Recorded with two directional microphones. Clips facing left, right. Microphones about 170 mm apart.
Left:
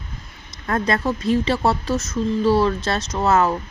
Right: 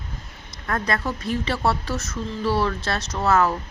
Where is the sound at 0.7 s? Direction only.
25° left (ahead or behind).